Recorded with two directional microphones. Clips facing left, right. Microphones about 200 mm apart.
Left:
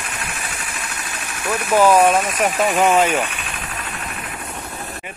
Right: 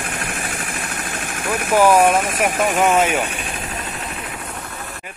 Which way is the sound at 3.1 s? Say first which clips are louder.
Even; 15° right (ahead or behind).